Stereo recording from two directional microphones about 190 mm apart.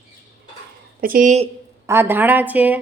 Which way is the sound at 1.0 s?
45° right (ahead or behind).